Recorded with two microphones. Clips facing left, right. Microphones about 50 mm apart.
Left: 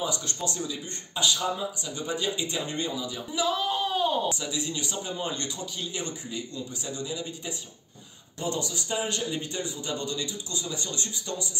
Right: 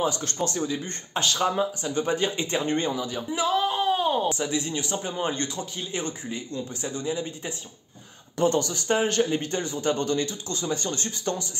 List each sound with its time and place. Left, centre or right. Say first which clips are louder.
0.0 s a man's voice: right 5 dB; right
8.4 s a man's voice: right 8 dB; right